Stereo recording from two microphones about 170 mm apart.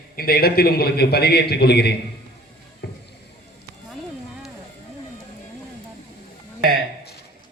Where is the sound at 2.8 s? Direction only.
70° left (ahead or behind).